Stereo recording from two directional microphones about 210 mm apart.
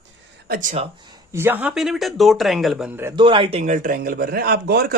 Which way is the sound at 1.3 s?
10° right (ahead or behind).